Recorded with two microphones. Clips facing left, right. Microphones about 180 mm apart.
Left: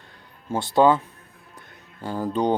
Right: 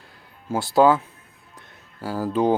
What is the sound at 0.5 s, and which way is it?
Speech, 5° right (ahead or behind).